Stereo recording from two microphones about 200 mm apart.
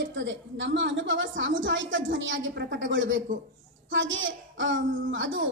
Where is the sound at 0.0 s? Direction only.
65° right (ahead or behind).